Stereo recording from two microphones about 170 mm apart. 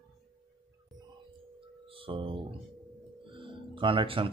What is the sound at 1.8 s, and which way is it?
Speech, 30° right (ahead or behind).